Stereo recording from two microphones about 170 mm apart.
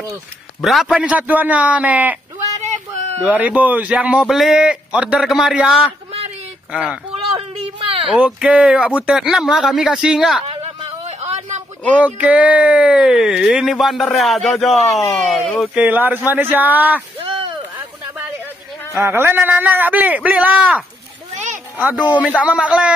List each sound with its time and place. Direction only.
0.6 s a man's voice: centre (ahead or behind)
3.3 s a man's voice: 10° right (ahead or behind)
7.3 s a sound: 35° right (ahead or behind)
8.1 s speech: 5° right (ahead or behind)
10.4 s a sound: 35° right (ahead or behind)
11.9 s speech: 10° right (ahead or behind)
15.7 s a man's voice: 10° right (ahead or behind)
17.4 s a sound: 30° right (ahead or behind)
18.9 s a man's voice: 15° right (ahead or behind)
22.1 s a man's voice: 10° right (ahead or behind)